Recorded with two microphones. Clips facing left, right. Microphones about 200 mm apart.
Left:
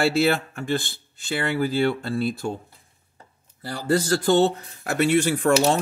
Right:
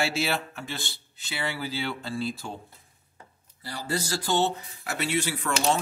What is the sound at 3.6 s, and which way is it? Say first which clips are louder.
Speech: left 9 dB; 55° left (ahead or behind).